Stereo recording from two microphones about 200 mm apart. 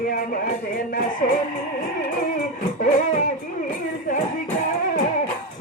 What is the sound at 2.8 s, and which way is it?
Music, 40° left (ahead or behind).